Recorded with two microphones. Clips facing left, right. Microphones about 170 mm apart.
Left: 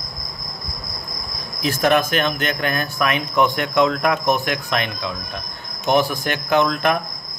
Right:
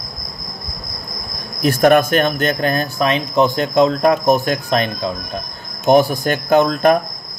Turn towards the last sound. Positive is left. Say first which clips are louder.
# right 5 dB
turn(degrees=-40)  # may be behind; listen again after turning